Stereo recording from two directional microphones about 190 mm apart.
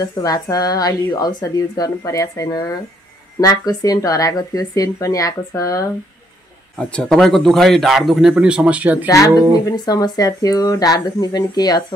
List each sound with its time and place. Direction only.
0.0 s speech: 20° left (ahead or behind)
6.8 s speech: 5° left (ahead or behind)
9.0 s speech: 15° left (ahead or behind)